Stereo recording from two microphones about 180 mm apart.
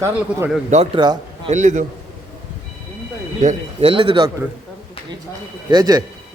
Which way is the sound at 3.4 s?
35° right (ahead or behind).